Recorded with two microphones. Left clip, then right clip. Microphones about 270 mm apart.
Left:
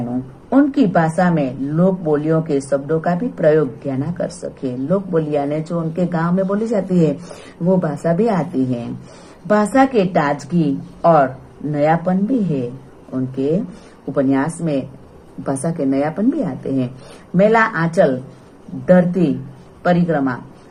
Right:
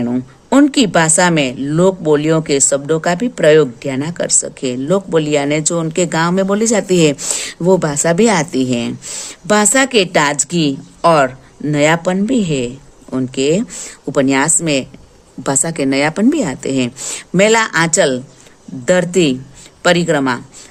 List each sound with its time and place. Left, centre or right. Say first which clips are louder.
0.7 s a woman's voice: right 3 dB; right
1.0 s speech: right 5 dB; right
8.5 s a woman's voice: right 4 dB; right
9.9 s a woman's voice: right 4 dB; right
15.4 s speech: right 4 dB; right
18.9 s a woman's voice: right 2 dB; right